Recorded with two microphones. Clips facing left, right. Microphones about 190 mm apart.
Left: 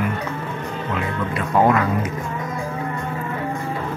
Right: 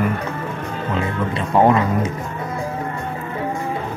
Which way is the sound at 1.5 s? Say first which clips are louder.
Right 2 dB; 25° right (ahead or behind).